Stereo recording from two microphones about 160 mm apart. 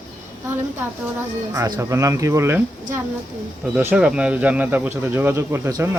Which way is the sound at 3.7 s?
10° right (ahead or behind).